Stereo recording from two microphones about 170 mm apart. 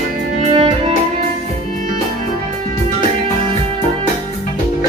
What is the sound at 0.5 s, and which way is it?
Music, 35° right (ahead or behind).